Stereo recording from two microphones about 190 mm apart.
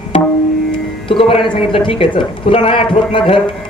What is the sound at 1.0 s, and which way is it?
Music, 25° left (ahead or behind).